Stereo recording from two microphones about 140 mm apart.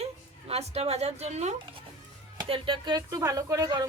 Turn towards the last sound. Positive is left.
turn(degrees=-25)  # may be behind; listen again after turning